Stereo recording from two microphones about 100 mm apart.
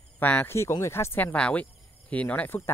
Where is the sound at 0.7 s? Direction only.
30° left (ahead or behind).